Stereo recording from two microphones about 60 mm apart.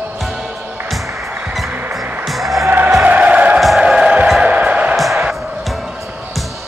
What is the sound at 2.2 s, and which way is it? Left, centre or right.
Music, centre.